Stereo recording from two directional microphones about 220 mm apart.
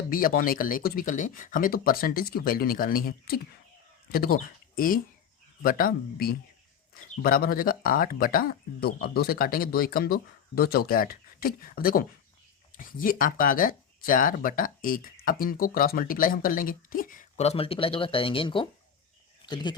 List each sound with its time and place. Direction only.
0.1 s speech: 40° left (ahead or behind); by 18.7 s 25° left (ahead or behind)